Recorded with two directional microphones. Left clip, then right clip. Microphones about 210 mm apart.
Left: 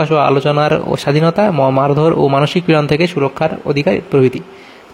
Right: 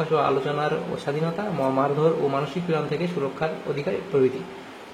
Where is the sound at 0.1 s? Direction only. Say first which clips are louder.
Left 9 dB; 50° left (ahead or behind).